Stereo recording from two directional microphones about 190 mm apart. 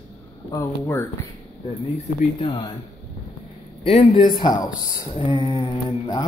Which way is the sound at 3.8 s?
30° left (ahead or behind).